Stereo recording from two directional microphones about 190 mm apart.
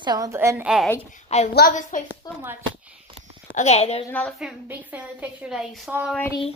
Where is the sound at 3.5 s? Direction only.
35° left (ahead or behind).